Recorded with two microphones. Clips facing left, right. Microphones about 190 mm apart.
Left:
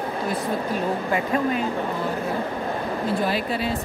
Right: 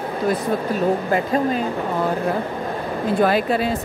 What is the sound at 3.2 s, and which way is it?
Speech, 50° right (ahead or behind).